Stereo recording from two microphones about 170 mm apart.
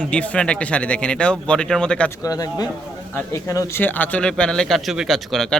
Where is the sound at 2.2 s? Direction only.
20° left (ahead or behind); by 5.4 s centre (ahead or behind).